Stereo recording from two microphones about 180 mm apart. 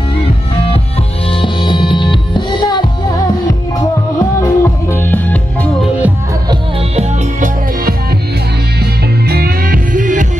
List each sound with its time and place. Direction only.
1.4 s music: 25° left (ahead or behind)
4.2 s music: 15° left (ahead or behind)
7.0 s music: 45° right (ahead or behind)
9.3 s music: 55° right (ahead or behind)